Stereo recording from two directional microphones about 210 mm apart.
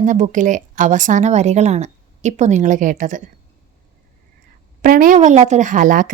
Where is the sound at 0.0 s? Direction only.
35° right (ahead or behind).